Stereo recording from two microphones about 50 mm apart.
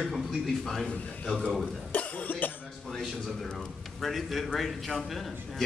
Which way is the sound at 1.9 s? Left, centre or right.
Left.